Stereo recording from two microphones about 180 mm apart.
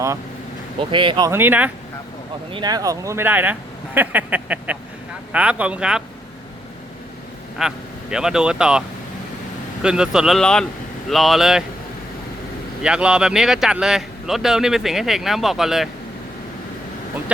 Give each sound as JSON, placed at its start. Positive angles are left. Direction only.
{"t": 0.8, "sound": "speech", "side_deg": -25}
{"t": 1.3, "sound": "speech", "side_deg": -10}
{"t": 2.5, "sound": "speech", "side_deg": -25}
{"t": 7.6, "sound": "speech", "side_deg": -5}
{"t": 9.8, "sound": "speech", "side_deg": -5}
{"t": 12.8, "sound": "speech", "side_deg": -5}